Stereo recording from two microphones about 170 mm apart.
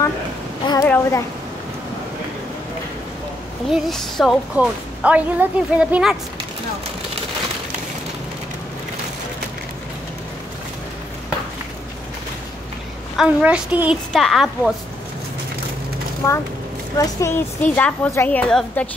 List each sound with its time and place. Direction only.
0.7 s a woman's voice: 15° left (ahead or behind)
3.7 s a woman's voice: centre (ahead or behind)
13.2 s a woman's voice: 5° right (ahead or behind)
16.9 s a woman's voice: 20° left (ahead or behind)